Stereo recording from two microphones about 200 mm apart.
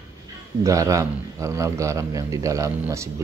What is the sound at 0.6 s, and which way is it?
A man's voice, 15° right (ahead or behind).